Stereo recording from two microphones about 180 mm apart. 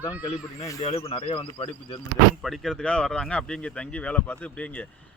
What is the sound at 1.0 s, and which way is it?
Speech, 30° left (ahead or behind).